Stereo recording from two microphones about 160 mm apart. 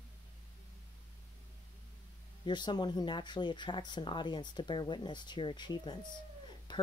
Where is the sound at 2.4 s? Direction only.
30° left (ahead or behind).